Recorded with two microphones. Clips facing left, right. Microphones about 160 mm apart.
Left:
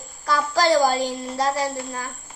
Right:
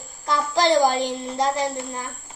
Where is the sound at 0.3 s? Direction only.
20° right (ahead or behind).